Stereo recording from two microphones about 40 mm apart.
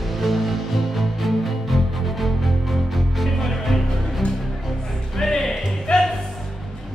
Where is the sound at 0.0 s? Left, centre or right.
Centre.